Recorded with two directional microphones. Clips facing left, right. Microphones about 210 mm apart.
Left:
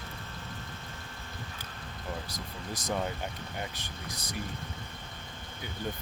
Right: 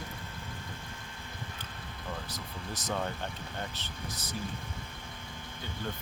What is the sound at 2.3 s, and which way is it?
Speech, 10° left (ahead or behind).